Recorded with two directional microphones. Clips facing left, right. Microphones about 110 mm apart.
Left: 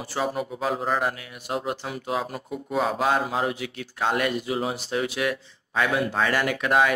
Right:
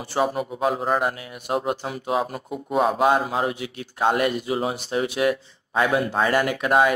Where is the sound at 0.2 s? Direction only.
25° right (ahead or behind).